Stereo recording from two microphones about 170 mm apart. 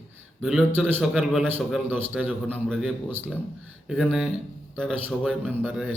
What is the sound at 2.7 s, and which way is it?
A man's voice, centre (ahead or behind).